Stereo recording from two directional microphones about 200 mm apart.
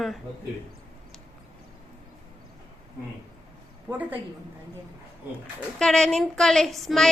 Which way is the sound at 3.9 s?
10° right (ahead or behind).